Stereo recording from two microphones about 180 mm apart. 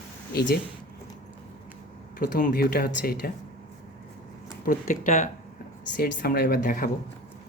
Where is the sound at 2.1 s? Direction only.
50° left (ahead or behind).